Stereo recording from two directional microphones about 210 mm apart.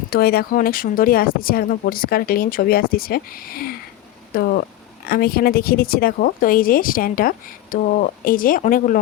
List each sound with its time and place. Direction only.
0.1 s speech: 45° left (ahead or behind)